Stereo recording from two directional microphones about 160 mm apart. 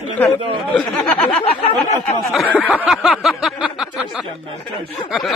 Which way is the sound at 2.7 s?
5° right (ahead or behind).